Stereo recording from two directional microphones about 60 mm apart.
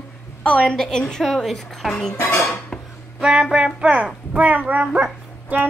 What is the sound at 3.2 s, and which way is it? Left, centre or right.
A woman's voice, centre.